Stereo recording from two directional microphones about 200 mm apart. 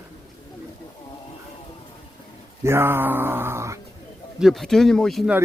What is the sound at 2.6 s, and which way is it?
Speech, 10° right (ahead or behind).